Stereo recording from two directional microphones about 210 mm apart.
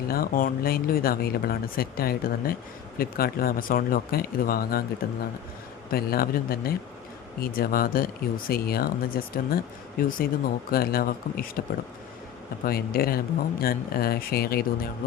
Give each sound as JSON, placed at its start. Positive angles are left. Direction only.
{"t": 0.1, "sound": "speech", "side_deg": 45}
{"t": 12.6, "sound": "speech", "side_deg": 45}